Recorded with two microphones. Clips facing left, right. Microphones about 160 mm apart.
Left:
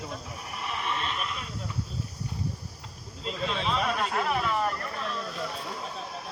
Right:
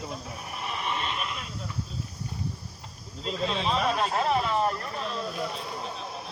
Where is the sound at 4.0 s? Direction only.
30° right (ahead or behind).